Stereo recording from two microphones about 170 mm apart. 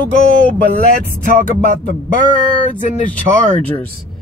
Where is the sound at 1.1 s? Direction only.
50° left (ahead or behind).